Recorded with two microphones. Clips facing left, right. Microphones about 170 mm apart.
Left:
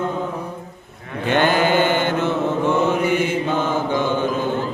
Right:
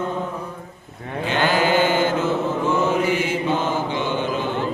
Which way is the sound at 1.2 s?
55° left (ahead or behind).